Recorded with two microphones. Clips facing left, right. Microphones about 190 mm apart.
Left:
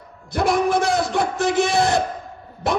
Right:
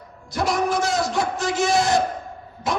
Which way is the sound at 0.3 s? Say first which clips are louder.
Left 3 dB; 55° left (ahead or behind).